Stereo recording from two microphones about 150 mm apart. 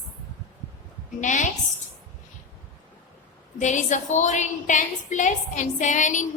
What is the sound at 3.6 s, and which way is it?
A woman's voice, 55° left (ahead or behind).